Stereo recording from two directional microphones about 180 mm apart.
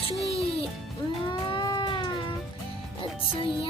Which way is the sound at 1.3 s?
25° left (ahead or behind).